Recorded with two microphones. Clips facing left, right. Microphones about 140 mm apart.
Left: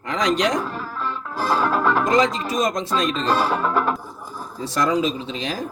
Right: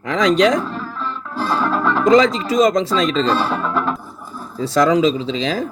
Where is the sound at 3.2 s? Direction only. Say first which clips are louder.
Right 1 dB; 10° left (ahead or behind).